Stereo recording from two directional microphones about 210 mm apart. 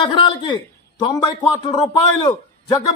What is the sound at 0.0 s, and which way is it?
A man's voice, 20° left (ahead or behind).